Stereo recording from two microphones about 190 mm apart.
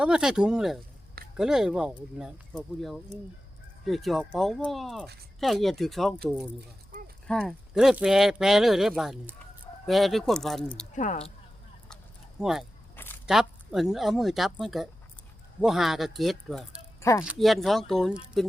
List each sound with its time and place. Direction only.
0.0 s speech: 5° right (ahead or behind)
10.9 s speech: 40° left (ahead or behind)
12.4 s speech: centre (ahead or behind)
17.0 s speech: 15° left (ahead or behind)
17.2 s speech: centre (ahead or behind)